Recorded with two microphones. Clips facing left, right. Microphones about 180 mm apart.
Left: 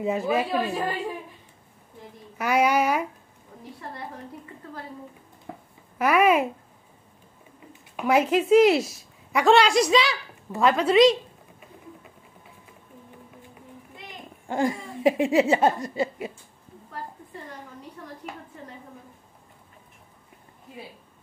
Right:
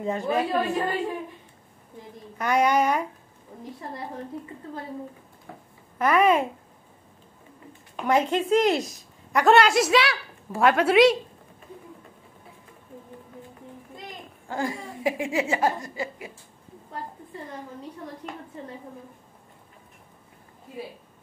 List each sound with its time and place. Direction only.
0.0 s a woman's voice: 5° left (ahead or behind)
2.3 s speech: 5° left (ahead or behind)
3.5 s a sound: 25° right (ahead or behind)
5.9 s speech: 10° left (ahead or behind)
7.9 s a woman's voice: 5° left (ahead or behind)
14.5 s speech: 20° left (ahead or behind)
15.5 s a sound: 25° left (ahead or behind)